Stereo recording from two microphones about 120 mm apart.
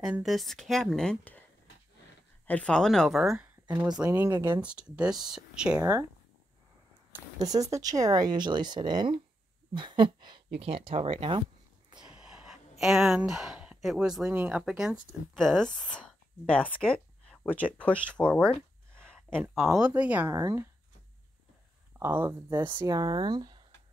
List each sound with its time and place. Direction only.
0.0 s speech: 5° right (ahead or behind)
2.4 s speech: 10° left (ahead or behind)
4.0 s speech: 15° right (ahead or behind)
4.6 s speech: 10° right (ahead or behind)
7.3 s speech: 30° right (ahead or behind); by 11.4 s 50° right (ahead or behind)
12.0 s a sound: 5° right (ahead or behind)
12.8 s speech: centre (ahead or behind)
15.3 s speech: 5° left (ahead or behind)
18.9 s a sound: 5° left (ahead or behind)
19.5 s speech: centre (ahead or behind)
20.2 s speech: 20° right (ahead or behind)
21.9 s speech: 15° right (ahead or behind)
22.8 s speech: 35° right (ahead or behind)